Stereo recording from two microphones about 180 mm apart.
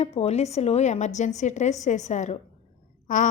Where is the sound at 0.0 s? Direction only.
35° left (ahead or behind).